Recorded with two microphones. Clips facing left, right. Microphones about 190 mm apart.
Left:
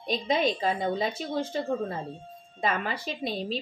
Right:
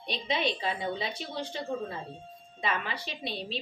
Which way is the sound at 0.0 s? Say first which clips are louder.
Left 5 dB; 45° left (ahead or behind).